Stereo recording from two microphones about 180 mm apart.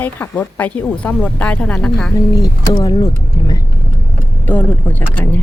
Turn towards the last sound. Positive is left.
turn(degrees=10)  # may be behind; listen again after turning